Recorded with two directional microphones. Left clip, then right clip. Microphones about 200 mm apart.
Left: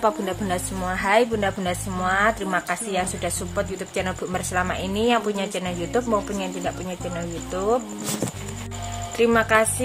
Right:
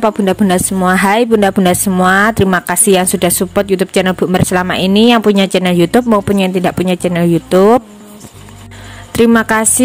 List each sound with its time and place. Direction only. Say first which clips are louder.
0.0 s a woman's voice: right 10 dB; 45° right (ahead or behind)
9.1 s a woman's voice: right 8 dB; 50° right (ahead or behind)